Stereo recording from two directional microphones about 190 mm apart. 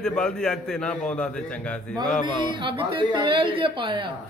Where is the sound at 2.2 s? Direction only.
25° right (ahead or behind).